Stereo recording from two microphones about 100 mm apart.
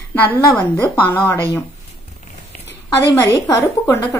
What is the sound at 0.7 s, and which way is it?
Speech, 20° left (ahead or behind).